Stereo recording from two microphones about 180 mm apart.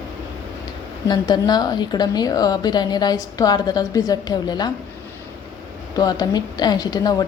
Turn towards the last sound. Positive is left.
turn(degrees=20)  # may be behind; listen again after turning